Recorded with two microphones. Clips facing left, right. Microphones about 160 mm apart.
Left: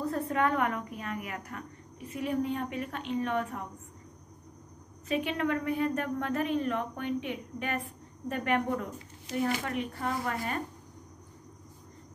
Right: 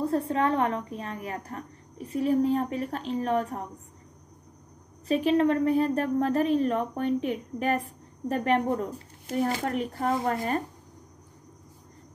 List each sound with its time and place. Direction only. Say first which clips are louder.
0.0 s a woman's voice: right 4 dB; 30° right (ahead or behind)
5.0 s a woman's voice: right 8 dB; 35° right (ahead or behind)